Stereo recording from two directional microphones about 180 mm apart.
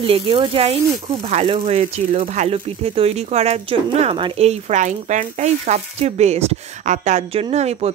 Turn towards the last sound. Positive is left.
turn(degrees=-35)  # may be behind; listen again after turning